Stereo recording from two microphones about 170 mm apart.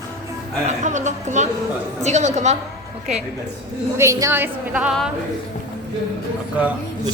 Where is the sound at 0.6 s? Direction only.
45° right (ahead or behind).